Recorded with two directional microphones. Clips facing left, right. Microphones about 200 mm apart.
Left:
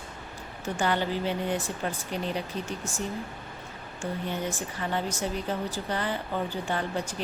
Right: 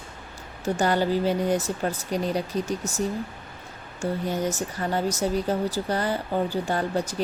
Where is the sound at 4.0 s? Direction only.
40° right (ahead or behind).